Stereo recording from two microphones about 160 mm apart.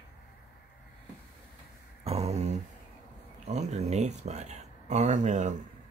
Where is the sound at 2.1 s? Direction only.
40° right (ahead or behind).